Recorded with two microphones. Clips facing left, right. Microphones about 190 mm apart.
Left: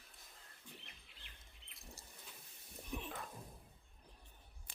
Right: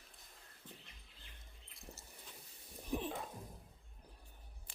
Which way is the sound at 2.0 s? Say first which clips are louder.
Right 1 dB; centre (ahead or behind).